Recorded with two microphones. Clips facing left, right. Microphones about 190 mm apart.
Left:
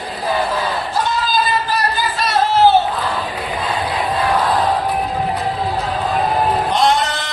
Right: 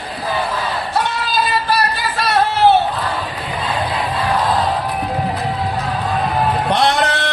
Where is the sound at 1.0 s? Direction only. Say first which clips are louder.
Left 1 dB; 65° right (ahead or behind).